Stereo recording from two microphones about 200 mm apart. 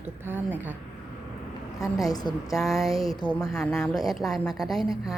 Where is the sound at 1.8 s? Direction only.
20° left (ahead or behind).